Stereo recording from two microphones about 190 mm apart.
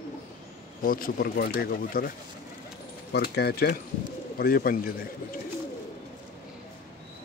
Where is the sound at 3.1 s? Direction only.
60° left (ahead or behind).